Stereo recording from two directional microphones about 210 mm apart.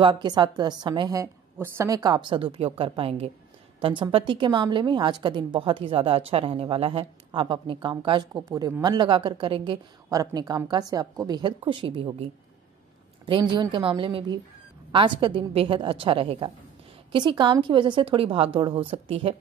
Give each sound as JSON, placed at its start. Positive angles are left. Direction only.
{"t": 0.0, "sound": "a woman's voice", "side_deg": -20}